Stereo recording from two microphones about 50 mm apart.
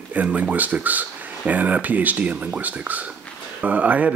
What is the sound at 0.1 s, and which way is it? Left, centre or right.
Speech, right.